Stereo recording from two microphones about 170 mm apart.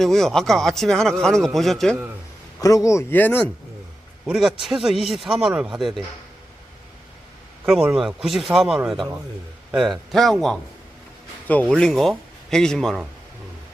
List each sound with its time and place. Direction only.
0.0 s a man's voice: centre (ahead or behind)
2.6 s a man's voice: 20° left (ahead or behind)
4.3 s a man's voice: centre (ahead or behind)
7.6 s a man's voice: 5° right (ahead or behind)